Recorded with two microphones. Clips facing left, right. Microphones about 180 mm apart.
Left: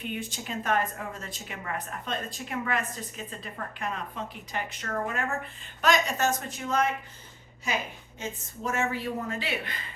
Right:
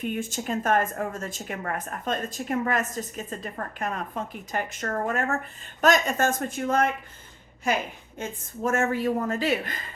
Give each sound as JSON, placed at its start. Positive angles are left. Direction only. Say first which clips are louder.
{"t": 0.0, "sound": "a woman's voice", "louder": "right 6 dB", "side_deg": -45}
{"t": 8.2, "sound": "a woman's voice", "louder": "right 5 dB", "side_deg": -50}